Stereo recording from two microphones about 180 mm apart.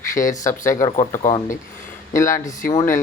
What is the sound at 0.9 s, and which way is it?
Speech, 40° left (ahead or behind).